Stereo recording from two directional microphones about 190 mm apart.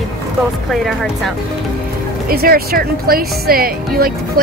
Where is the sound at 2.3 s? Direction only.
50° right (ahead or behind).